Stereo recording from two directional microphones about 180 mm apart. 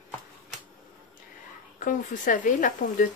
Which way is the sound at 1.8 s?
45° left (ahead or behind).